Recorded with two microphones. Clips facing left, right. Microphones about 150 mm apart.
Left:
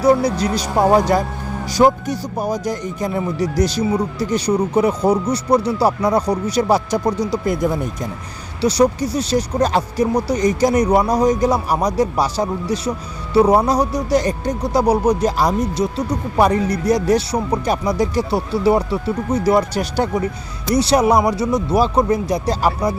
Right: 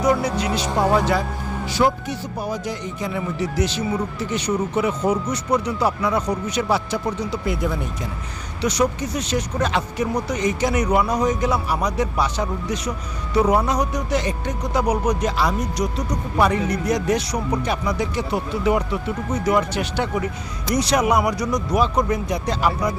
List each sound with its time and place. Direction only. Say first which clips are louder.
0.0 s speech: left 5 dB; 35° left (ahead or behind)